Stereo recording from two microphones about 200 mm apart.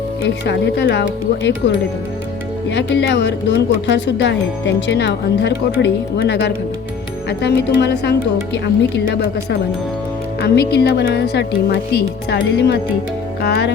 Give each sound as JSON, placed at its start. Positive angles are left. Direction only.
{"t": 0.2, "sound": "speech", "side_deg": 60}
{"t": 2.6, "sound": "speech", "side_deg": 60}